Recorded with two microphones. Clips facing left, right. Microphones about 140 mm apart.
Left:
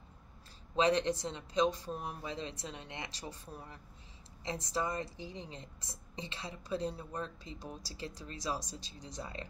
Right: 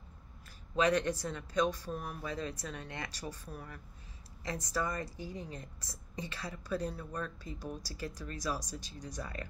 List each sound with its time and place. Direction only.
0.7 s a woman's voice: 25° left (ahead or behind)